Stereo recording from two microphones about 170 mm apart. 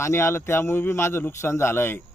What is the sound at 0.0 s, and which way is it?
Speech, 15° left (ahead or behind).